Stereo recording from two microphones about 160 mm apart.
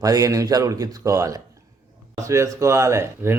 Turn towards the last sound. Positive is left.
turn(degrees=-15)  # may be behind; listen again after turning